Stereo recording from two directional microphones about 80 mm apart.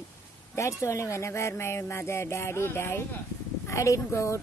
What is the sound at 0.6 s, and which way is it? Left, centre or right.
Speech, left.